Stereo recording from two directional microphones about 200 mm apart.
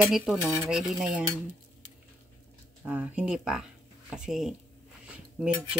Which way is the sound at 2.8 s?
10° right (ahead or behind).